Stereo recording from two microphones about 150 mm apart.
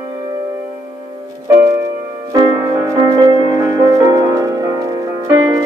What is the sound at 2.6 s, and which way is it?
Music, 15° right (ahead or behind).